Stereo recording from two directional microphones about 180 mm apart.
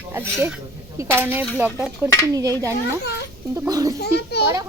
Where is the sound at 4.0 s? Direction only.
65° left (ahead or behind).